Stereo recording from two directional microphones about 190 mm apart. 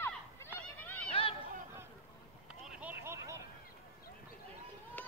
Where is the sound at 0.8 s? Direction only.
10° left (ahead or behind).